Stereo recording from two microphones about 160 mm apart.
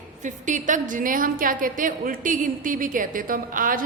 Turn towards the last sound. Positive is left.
turn(degrees=-60)  # may be behind; listen again after turning